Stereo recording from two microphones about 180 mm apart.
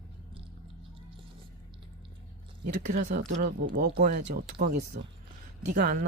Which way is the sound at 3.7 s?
60° right (ahead or behind).